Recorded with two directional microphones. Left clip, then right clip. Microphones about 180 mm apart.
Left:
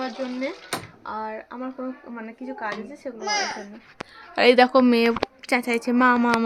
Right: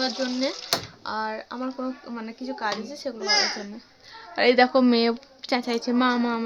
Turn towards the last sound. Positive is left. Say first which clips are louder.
# left 5 dB
turn(degrees=15)  # may be behind; listen again after turning